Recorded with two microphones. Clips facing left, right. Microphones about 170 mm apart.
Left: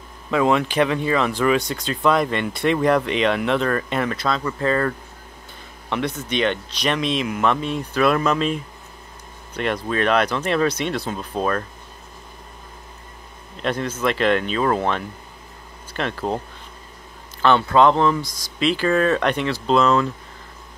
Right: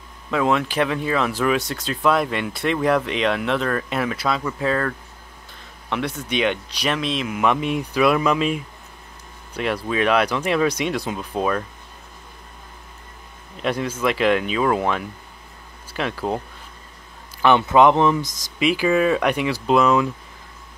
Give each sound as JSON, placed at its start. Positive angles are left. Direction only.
{"t": 0.3, "sound": "speech", "side_deg": 0}
{"t": 7.4, "sound": "speech", "side_deg": -10}
{"t": 13.6, "sound": "speech", "side_deg": -10}
{"t": 17.4, "sound": "speech", "side_deg": -15}